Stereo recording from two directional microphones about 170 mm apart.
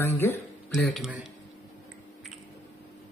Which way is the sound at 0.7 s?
Centre (ahead or behind).